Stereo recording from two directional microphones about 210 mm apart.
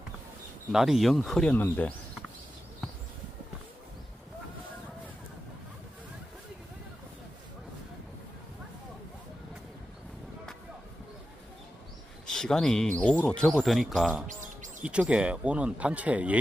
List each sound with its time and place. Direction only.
0.7 s speech: centre (ahead or behind)
12.2 s a sound: 5° left (ahead or behind)
13.0 s speech: 5° left (ahead or behind)
14.3 s bird: 35° right (ahead or behind)
14.8 s speech: 5° right (ahead or behind)